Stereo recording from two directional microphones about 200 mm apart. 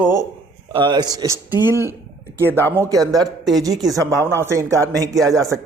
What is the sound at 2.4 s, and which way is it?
Speech, 10° left (ahead or behind).